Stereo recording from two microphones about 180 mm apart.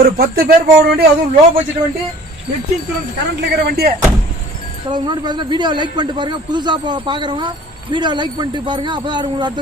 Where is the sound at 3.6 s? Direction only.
60° right (ahead or behind).